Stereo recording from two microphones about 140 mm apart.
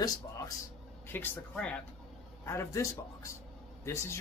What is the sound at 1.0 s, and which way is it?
Speech, 15° left (ahead or behind).